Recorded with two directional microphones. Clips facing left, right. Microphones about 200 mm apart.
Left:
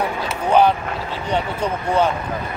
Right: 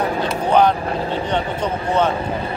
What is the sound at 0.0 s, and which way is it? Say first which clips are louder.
Vehicle: right 3 dB; 35° right (ahead or behind).